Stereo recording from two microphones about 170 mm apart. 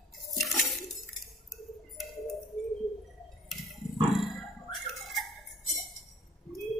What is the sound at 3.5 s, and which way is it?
Roaring cats, centre (ahead or behind).